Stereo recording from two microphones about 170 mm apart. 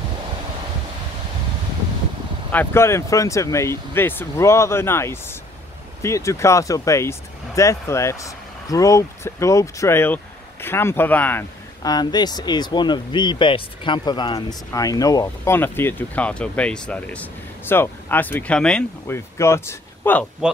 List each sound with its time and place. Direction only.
2.5 s speech: 10° left (ahead or behind)
11.8 s speech: 25° left (ahead or behind)